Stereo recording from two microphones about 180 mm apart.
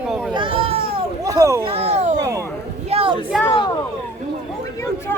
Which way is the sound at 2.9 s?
30° right (ahead or behind).